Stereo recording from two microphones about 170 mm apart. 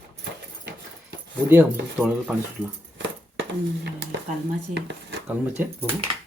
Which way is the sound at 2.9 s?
90° right.